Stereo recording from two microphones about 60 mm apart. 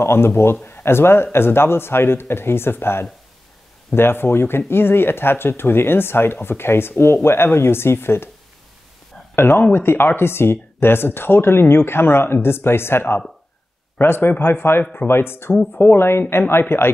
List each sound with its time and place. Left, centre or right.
0.0 s speech: left
9.3 s speech: left